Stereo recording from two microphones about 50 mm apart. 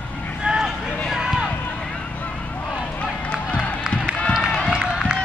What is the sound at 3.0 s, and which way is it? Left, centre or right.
Run, left.